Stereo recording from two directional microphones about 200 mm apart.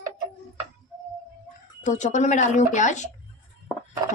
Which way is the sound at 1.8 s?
35° left (ahead or behind).